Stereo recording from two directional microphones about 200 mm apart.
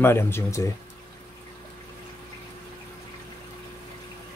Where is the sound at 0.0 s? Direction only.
10° left (ahead or behind).